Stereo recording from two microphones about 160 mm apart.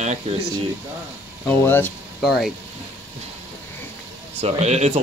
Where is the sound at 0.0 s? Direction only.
45° right (ahead or behind).